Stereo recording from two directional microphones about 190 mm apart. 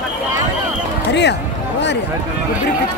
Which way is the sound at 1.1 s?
65° left (ahead or behind).